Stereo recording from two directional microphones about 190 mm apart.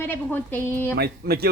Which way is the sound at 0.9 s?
55° right (ahead or behind).